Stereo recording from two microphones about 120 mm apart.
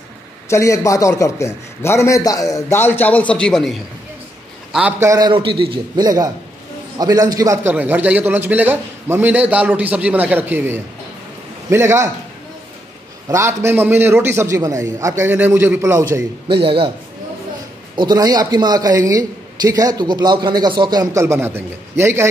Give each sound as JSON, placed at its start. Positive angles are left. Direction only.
{"t": 0.5, "sound": "a man's voice", "side_deg": 25}
{"t": 2.8, "sound": "a man's voice", "side_deg": 15}
{"t": 5.0, "sound": "a man's voice", "side_deg": -30}
{"t": 5.3, "sound": "a man's voice", "side_deg": -45}
{"t": 6.0, "sound": "a man's voice", "side_deg": -30}
{"t": 7.7, "sound": "a man's voice", "side_deg": -15}
{"t": 13.3, "sound": "a man's voice", "side_deg": -25}
{"t": 16.6, "sound": "a man's voice", "side_deg": -50}
{"t": 17.9, "sound": "speech", "side_deg": -35}